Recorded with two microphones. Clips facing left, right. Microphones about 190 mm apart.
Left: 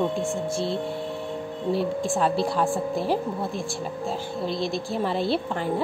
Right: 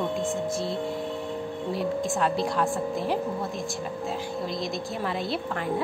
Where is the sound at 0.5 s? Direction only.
30° left (ahead or behind).